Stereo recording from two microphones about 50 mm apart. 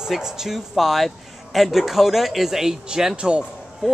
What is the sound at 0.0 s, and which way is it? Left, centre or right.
Speech, centre.